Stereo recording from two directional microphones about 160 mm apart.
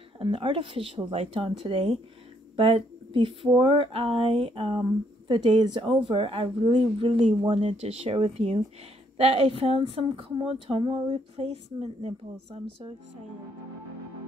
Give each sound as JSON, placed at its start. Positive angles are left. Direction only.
{"t": 0.2, "sound": "speech", "side_deg": -35}